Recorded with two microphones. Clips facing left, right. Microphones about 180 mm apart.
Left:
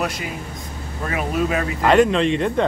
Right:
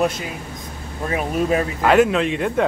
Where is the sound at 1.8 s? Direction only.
5° right (ahead or behind).